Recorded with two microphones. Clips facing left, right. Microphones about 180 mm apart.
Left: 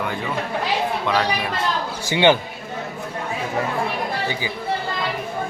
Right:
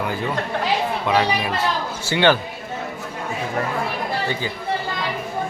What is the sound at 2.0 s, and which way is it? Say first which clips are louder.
Speech: left 1 dB; 20° left (ahead or behind).